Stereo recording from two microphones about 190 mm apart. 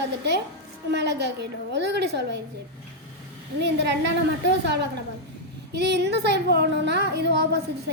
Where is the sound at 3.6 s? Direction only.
65° right (ahead or behind).